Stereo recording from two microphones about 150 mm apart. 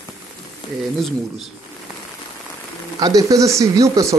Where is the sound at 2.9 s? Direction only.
25° right (ahead or behind).